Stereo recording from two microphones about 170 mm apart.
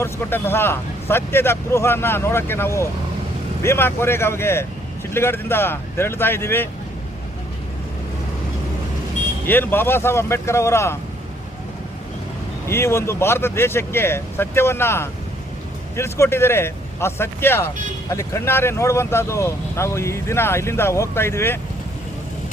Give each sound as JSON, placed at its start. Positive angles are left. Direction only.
{"t": 0.0, "sound": "speech", "side_deg": 15}
{"t": 9.5, "sound": "speech", "side_deg": 10}
{"t": 12.6, "sound": "speech", "side_deg": 15}